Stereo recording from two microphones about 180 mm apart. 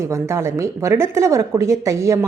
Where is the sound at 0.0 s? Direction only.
15° right (ahead or behind).